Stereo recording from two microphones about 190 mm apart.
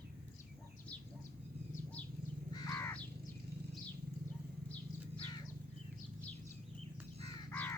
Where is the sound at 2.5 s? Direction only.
20° left (ahead or behind).